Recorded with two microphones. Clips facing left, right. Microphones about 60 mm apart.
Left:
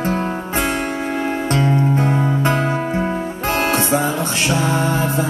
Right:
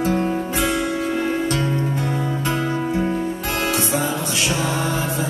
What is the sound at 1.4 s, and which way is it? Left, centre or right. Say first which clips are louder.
Music: left 4 dB; left.